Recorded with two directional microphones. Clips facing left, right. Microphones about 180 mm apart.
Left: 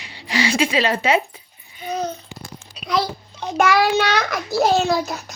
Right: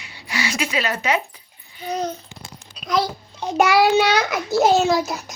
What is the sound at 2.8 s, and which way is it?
Speech, centre (ahead or behind).